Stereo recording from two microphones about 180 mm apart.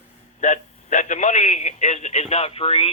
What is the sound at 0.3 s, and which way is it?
A man's voice, 40° left (ahead or behind).